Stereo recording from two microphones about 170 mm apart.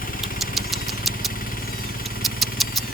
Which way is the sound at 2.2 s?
Centre (ahead or behind).